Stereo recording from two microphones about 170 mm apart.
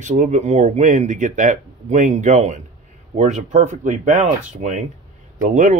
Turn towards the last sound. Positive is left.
turn(degrees=-50)  # may be behind; listen again after turning